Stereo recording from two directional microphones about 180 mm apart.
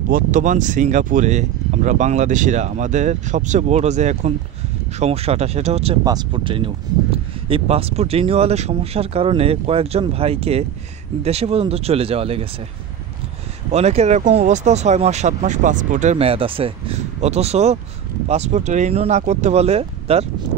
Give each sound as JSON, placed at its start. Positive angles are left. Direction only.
{"t": 0.1, "sound": "speech", "side_deg": -45}
{"t": 6.0, "sound": "speech", "side_deg": -25}
{"t": 13.7, "sound": "speech", "side_deg": -35}